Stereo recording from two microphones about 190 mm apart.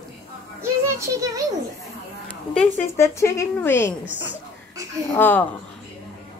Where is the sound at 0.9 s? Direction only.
15° right (ahead or behind).